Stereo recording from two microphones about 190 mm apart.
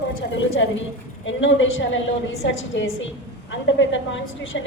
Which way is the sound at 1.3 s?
85° left.